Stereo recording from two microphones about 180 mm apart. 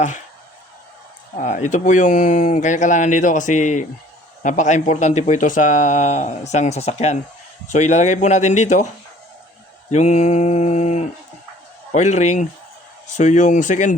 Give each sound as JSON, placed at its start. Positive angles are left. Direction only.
{"t": 1.4, "sound": "speech", "side_deg": 45}
{"t": 9.9, "sound": "speech", "side_deg": 40}